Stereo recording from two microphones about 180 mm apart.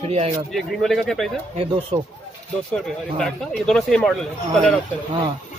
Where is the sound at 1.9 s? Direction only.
40° right (ahead or behind).